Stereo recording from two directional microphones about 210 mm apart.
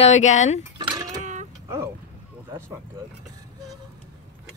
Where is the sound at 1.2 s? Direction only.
35° right (ahead or behind).